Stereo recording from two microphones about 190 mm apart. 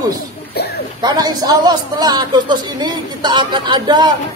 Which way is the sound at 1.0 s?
20° right (ahead or behind).